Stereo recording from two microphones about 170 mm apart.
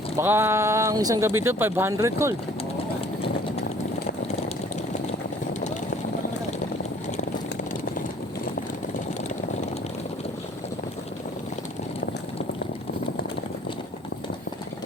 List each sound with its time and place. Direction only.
0.2 s speech: 15° right (ahead or behind)